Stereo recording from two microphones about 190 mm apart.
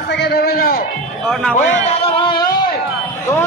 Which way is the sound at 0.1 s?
60° left (ahead or behind).